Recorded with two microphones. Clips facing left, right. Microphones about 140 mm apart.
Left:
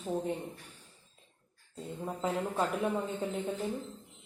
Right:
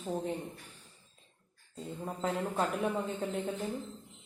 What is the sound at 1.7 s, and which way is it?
Speech, centre (ahead or behind).